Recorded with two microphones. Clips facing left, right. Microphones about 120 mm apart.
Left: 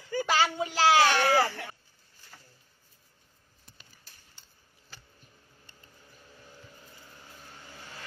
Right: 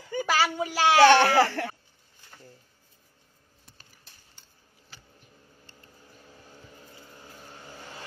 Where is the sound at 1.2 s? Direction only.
75° right (ahead or behind).